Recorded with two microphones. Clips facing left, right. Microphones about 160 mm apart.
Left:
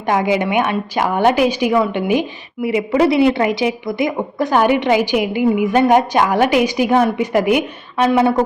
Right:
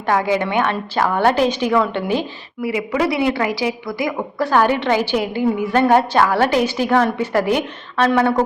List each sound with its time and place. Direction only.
0.0 s a woman's voice: 15° left (ahead or behind)
2.6 s a woman's voice: 25° left (ahead or behind)